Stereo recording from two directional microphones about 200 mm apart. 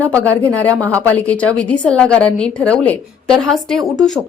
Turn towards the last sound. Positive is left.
turn(degrees=0)  # may be behind; listen again after turning